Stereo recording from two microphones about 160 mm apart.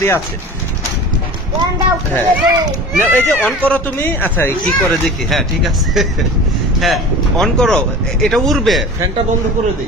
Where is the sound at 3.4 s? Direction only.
10° left (ahead or behind).